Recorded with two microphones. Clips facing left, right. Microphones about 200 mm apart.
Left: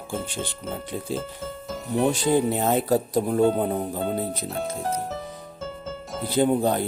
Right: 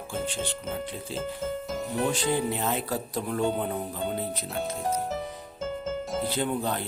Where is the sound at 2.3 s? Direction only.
50° left (ahead or behind).